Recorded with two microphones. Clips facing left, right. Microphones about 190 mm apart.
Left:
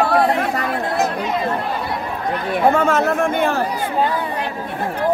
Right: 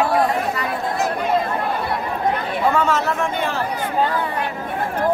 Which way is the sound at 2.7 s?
50° left (ahead or behind).